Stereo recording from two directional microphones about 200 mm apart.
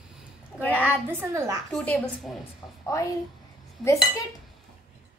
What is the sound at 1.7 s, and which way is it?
A woman's voice, 5° left (ahead or behind).